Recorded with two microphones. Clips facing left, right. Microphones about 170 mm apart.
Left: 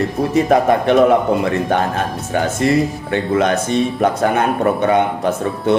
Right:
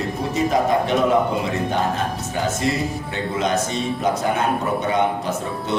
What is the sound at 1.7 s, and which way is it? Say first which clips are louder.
Speech: left 4 dB; 60° left (ahead or behind).